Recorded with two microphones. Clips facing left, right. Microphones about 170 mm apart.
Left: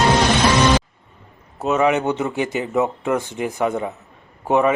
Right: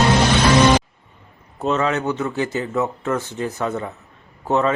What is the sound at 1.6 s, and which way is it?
A man's voice, 10° left (ahead or behind).